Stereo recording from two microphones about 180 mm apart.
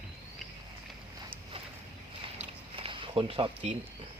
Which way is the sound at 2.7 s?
30° right (ahead or behind).